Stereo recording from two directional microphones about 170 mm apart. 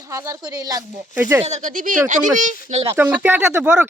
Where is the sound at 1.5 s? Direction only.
45° right (ahead or behind).